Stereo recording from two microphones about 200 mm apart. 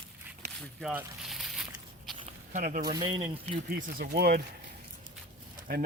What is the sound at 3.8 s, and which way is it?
Speech, 50° right (ahead or behind).